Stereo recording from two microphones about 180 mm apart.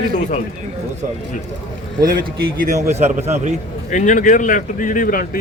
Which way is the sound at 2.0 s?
55° right (ahead or behind).